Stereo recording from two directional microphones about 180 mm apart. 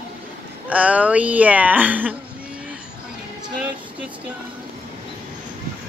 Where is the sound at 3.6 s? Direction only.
10° right (ahead or behind).